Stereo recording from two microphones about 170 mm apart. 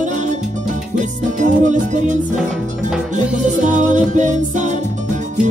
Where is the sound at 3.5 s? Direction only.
45° right (ahead or behind).